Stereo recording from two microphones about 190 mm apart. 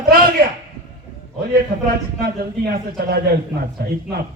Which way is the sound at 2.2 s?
55° right (ahead or behind).